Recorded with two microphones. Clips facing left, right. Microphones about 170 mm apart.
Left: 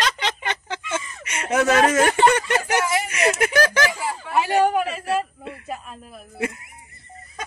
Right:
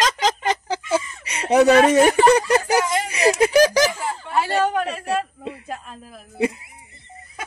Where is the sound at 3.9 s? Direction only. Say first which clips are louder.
Even; 5° left (ahead or behind).